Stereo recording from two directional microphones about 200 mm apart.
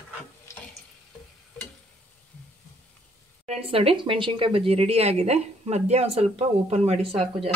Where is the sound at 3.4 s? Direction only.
30° right (ahead or behind).